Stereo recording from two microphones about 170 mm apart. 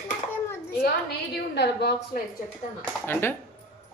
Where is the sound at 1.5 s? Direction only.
75° left (ahead or behind).